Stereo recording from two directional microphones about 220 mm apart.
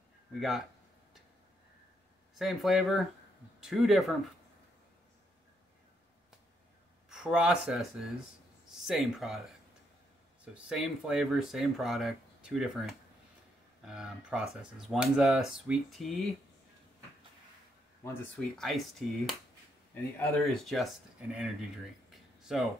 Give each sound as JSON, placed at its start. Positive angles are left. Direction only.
{"t": 2.3, "sound": "speech", "side_deg": 0}
{"t": 7.1, "sound": "speech", "side_deg": -5}
{"t": 10.5, "sound": "speech", "side_deg": -5}
{"t": 18.0, "sound": "speech", "side_deg": 0}
{"t": 22.1, "sound": "a sound", "side_deg": 0}